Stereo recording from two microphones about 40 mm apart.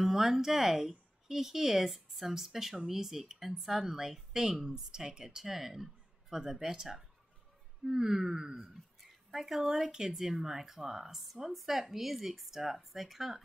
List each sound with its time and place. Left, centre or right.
0.0 s speech: centre
9.0 s a sound: centre
9.8 s speech: centre
10.1 s speech: centre